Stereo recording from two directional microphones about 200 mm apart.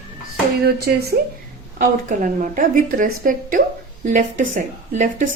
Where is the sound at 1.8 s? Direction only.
40° right (ahead or behind).